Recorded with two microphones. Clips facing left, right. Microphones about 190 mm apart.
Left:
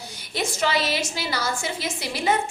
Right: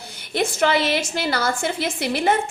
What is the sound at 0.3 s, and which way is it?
A woman's voice, 55° right (ahead or behind).